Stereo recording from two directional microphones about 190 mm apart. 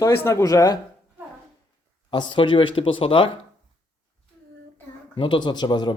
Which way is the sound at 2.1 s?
25° left (ahead or behind).